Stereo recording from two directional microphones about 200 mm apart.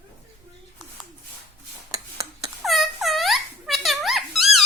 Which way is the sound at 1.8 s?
15° right (ahead or behind).